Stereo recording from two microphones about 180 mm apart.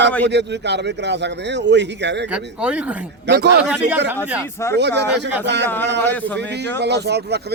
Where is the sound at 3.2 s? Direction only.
70° right (ahead or behind).